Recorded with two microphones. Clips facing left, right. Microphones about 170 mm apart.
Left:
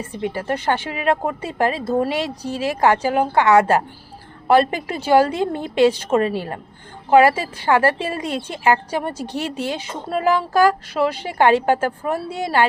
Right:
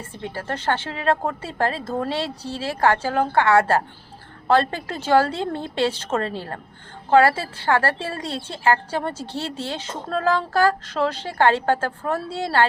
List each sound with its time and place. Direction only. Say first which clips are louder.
0.0 s a woman's voice: left 6 dB; 15° left (ahead or behind)